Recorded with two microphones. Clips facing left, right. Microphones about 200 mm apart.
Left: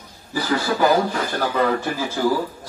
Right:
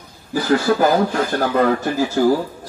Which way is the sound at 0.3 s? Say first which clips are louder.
Right 5 dB; 50° right (ahead or behind).